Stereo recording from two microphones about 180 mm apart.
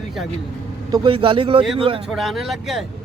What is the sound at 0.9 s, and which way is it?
Speech, 25° right (ahead or behind).